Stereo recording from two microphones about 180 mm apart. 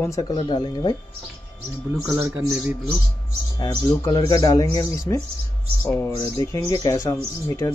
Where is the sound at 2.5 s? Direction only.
5° right (ahead or behind).